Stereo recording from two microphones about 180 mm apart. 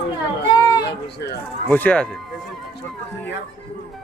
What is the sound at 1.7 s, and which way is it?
Speech, 10° left (ahead or behind).